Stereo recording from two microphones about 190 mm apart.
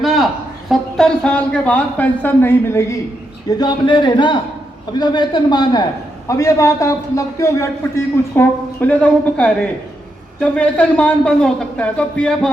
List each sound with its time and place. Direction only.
0.0 s a sound: centre (ahead or behind)
0.7 s a man's voice: 5° left (ahead or behind)
3.5 s a man's voice: 25° left (ahead or behind); by 12.5 s 5° left (ahead or behind)